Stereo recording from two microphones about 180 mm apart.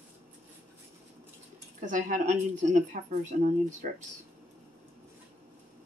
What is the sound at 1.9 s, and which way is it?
Speech, 45° right (ahead or behind).